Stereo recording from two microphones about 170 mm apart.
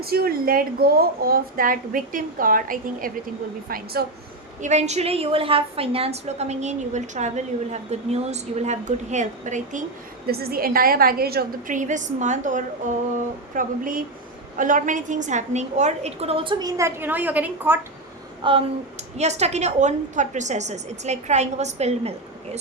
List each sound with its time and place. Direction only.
0.0 s a woman's voice: 65° right (ahead or behind)
4.6 s a woman's voice: 40° right (ahead or behind)
10.2 s a woman's voice: 65° right (ahead or behind)
11.8 s a woman's voice: 45° right (ahead or behind); by 17.7 s 10° right (ahead or behind)
18.4 s speech: 30° right (ahead or behind)
19.1 s a woman's voice: 40° right (ahead or behind)